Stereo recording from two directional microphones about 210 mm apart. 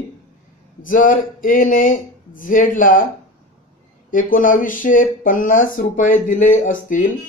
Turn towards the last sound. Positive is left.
turn(degrees=40)  # may be behind; listen again after turning